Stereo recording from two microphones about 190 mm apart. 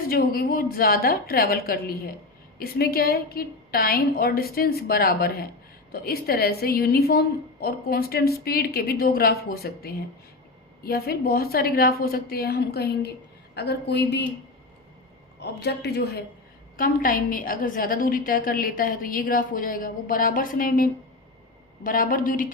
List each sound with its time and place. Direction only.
0.1 s a woman's voice: 50° left (ahead or behind)
15.4 s speech: 60° left (ahead or behind)
16.7 s a woman's voice: 45° left (ahead or behind)